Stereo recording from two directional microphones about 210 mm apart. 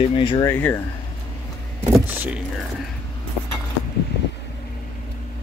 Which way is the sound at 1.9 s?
5° right (ahead or behind).